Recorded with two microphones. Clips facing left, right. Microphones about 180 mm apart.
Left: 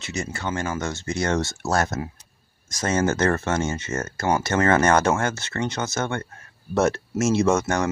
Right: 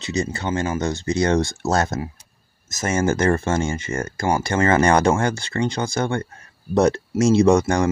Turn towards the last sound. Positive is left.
turn(degrees=-15)  # may be behind; listen again after turning